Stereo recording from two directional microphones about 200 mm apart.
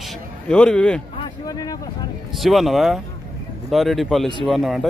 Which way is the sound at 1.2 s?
20° left (ahead or behind).